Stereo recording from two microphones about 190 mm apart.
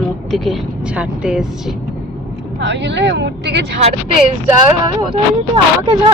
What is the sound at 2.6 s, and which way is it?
Speech, 70° right (ahead or behind).